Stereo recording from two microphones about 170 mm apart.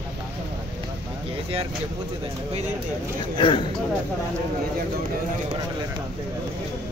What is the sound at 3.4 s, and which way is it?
Speech, 30° left (ahead or behind).